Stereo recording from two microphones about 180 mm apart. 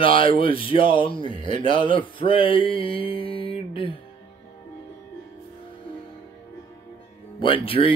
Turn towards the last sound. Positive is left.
turn(degrees=30)  # may be behind; listen again after turning